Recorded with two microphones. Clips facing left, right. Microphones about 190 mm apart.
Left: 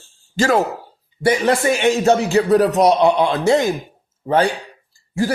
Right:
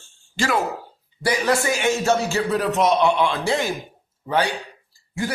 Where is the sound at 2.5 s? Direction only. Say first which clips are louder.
Left 6 dB; 40° left (ahead or behind).